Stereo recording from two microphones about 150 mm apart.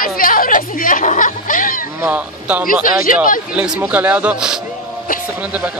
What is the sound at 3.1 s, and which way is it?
Speech, 60° left (ahead or behind).